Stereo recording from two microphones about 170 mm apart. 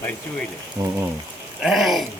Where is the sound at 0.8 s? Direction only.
20° right (ahead or behind).